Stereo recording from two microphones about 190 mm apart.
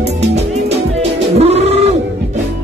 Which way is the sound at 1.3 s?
35° right (ahead or behind).